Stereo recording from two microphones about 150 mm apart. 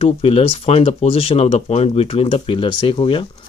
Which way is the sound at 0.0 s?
40° left (ahead or behind).